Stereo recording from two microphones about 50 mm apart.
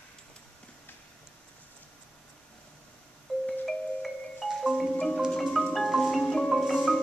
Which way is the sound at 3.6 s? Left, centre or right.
Centre.